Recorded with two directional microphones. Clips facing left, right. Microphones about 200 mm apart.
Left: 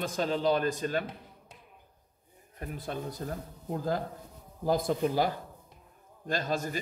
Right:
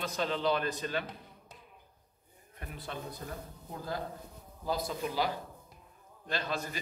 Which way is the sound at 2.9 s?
45° left (ahead or behind).